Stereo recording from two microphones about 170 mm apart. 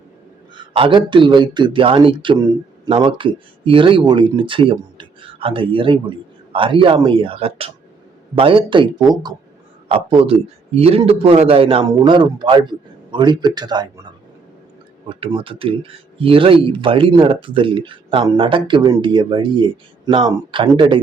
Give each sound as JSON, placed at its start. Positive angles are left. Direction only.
{"t": 0.5, "sound": "speech", "side_deg": -30}
{"t": 15.2, "sound": "speech", "side_deg": -30}